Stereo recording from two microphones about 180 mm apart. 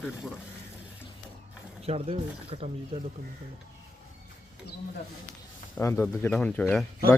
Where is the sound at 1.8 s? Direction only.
35° right (ahead or behind).